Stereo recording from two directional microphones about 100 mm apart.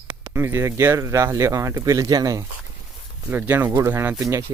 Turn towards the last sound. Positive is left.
turn(degrees=-30)  # may be behind; listen again after turning